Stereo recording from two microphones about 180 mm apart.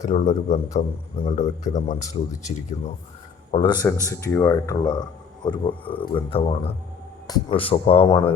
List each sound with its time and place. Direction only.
0.0 s a man's voice: 40° left (ahead or behind)
3.5 s speech: 25° left (ahead or behind)
3.8 s speech: 15° left (ahead or behind); by 8.3 s 30° left (ahead or behind)